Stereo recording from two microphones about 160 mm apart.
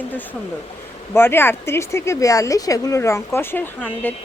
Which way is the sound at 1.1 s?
15° left (ahead or behind).